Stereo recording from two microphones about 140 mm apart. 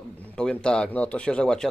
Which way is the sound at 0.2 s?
10° left (ahead or behind).